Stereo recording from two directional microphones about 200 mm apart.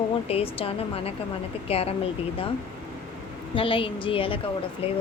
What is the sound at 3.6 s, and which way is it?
Speech, 25° left (ahead or behind).